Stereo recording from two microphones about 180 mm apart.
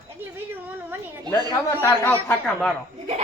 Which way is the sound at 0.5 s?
10° right (ahead or behind).